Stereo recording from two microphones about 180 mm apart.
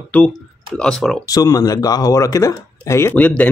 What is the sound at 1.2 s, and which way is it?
Speech, 20° left (ahead or behind).